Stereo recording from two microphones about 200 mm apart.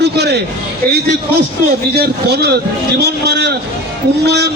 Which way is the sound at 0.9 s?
55° right (ahead or behind).